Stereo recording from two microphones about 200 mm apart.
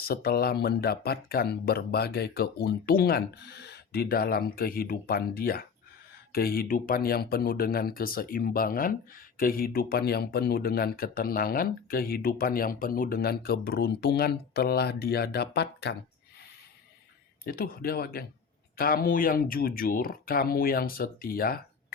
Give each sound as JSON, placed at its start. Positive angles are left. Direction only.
{"t": 0.0, "sound": "speech", "side_deg": 50}
{"t": 17.4, "sound": "speech", "side_deg": 50}